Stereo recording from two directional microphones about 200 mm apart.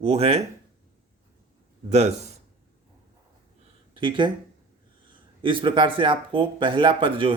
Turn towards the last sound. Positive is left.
turn(degrees=-25)  # may be behind; listen again after turning